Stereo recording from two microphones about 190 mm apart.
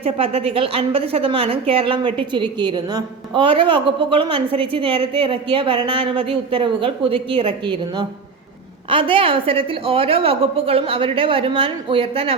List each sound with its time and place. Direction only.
0.0 s a woman's voice: 30° right (ahead or behind)